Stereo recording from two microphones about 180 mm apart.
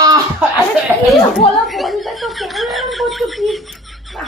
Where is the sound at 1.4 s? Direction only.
Centre (ahead or behind).